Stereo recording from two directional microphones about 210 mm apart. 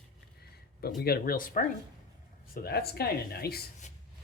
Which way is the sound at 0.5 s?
45° left (ahead or behind).